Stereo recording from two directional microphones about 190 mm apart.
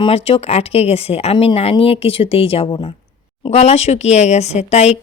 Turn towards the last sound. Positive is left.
turn(degrees=35)  # may be behind; listen again after turning